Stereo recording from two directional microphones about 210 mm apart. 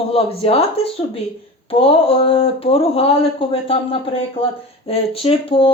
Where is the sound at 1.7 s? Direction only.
25° left (ahead or behind).